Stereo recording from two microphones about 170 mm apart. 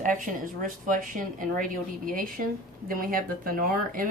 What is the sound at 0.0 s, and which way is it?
Speech, 50° right (ahead or behind).